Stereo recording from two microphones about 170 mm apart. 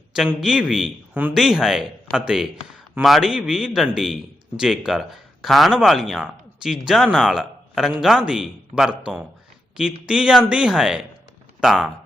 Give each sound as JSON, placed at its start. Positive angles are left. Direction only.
{"t": 0.2, "sound": "speech", "side_deg": -5}